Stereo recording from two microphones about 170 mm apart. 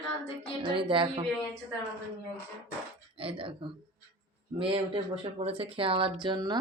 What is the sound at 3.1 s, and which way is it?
Speech, 35° right (ahead or behind).